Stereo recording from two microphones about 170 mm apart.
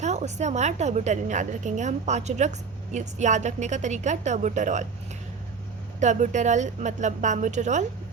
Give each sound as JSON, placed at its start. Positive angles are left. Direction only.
{"t": 0.0, "sound": "a woman's voice", "side_deg": -40}
{"t": 6.0, "sound": "a woman's voice", "side_deg": -45}